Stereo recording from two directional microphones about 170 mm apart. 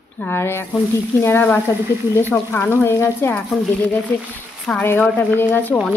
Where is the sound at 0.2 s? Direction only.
15° left (ahead or behind).